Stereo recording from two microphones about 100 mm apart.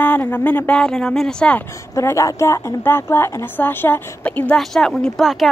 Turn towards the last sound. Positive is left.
turn(degrees=0)  # may be behind; listen again after turning